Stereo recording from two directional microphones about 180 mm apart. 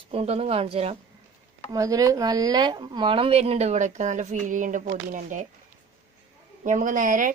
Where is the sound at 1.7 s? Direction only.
20° right (ahead or behind); by 5.4 s 45° right (ahead or behind).